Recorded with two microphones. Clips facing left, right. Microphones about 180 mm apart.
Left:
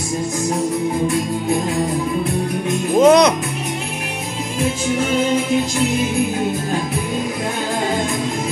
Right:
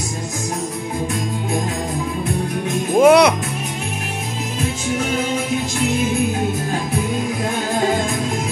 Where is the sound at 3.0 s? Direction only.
5° right (ahead or behind).